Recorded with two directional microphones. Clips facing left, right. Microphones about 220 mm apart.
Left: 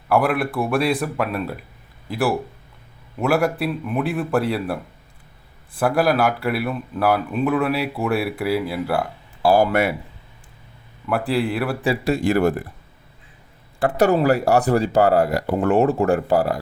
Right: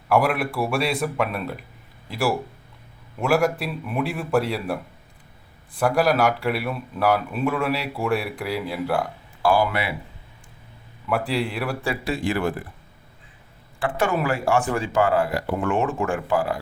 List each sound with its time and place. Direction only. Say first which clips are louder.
0.1 s speech: left 2 dB; centre (ahead or behind)
5.8 s speech: left 1 dB; 5° left (ahead or behind)
9.6 s speech: left 5 dB; 45° left (ahead or behind)
11.1 s speech: left 3 dB; 5° left (ahead or behind)
12.0 s speech: left 6 dB; 40° left (ahead or behind)
13.7 s speech: left 6 dB; 40° left (ahead or behind)